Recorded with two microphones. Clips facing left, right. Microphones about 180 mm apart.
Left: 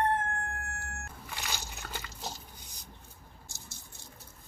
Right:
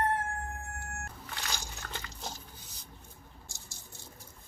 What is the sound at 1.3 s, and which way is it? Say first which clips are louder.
Biting: left 1 dB; 5° left (ahead or behind).